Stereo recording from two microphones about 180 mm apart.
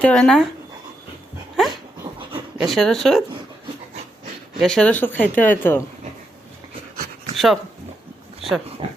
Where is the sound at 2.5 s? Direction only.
Centre (ahead or behind).